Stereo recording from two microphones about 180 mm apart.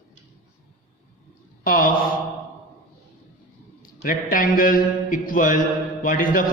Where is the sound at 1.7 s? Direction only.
50° left (ahead or behind).